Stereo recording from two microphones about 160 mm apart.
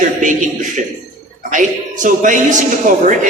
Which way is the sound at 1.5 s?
55° right (ahead or behind).